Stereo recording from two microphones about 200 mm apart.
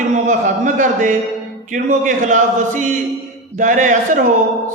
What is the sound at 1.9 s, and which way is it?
Speech, 40° right (ahead or behind).